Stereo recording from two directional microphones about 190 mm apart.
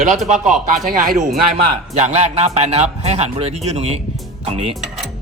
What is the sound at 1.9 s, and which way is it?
Speech, 35° right (ahead or behind).